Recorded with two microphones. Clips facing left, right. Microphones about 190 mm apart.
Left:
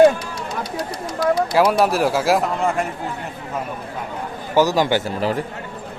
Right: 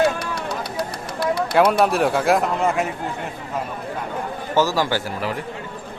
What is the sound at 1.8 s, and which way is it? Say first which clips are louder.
A man's voice: even; centre (ahead or behind).